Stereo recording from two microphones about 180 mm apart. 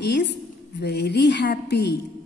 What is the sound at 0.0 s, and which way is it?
A woman's voice, 70° left (ahead or behind).